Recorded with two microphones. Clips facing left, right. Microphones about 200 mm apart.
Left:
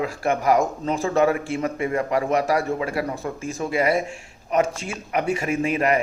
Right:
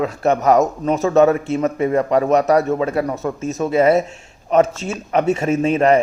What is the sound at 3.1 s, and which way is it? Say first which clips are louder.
Speech: right 6 dB; 20° right (ahead or behind).